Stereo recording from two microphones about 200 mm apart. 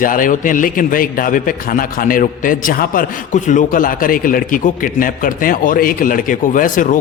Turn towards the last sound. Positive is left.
turn(degrees=40)  # may be behind; listen again after turning